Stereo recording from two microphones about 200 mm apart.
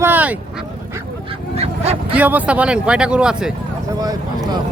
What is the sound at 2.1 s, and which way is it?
Speech, 5° right (ahead or behind).